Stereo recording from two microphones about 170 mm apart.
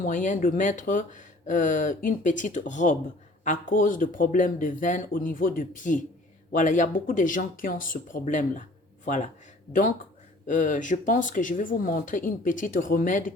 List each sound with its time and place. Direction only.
0.0 s speech: 50° left (ahead or behind)
10.4 s speech: 50° left (ahead or behind)